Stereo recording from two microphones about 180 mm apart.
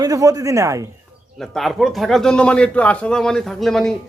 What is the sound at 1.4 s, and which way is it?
A man's voice, centre (ahead or behind).